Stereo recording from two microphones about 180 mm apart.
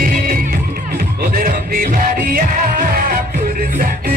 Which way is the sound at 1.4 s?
50° right (ahead or behind).